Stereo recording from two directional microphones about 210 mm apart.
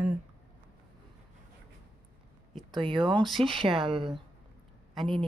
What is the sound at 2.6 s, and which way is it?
Speech, 20° right (ahead or behind).